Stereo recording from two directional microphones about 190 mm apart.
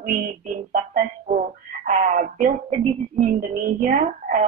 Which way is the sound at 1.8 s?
40° right (ahead or behind).